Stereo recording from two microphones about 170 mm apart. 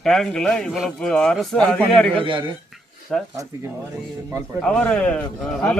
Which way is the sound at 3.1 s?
5° left (ahead or behind).